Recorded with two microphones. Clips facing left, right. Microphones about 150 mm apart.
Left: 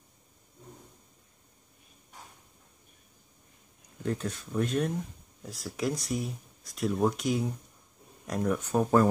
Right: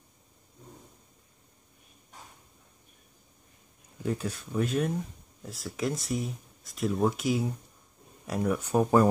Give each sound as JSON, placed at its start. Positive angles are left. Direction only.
{"t": 4.0, "sound": "speech", "side_deg": -10}